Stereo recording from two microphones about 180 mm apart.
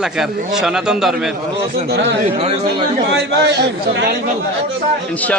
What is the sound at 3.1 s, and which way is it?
A man's voice, 70° right (ahead or behind).